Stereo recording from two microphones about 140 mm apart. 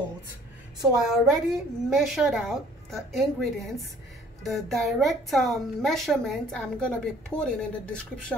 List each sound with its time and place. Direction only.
1.0 s a woman's voice: centre (ahead or behind)